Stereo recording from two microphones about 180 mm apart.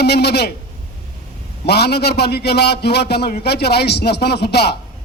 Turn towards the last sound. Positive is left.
turn(degrees=65)  # may be behind; listen again after turning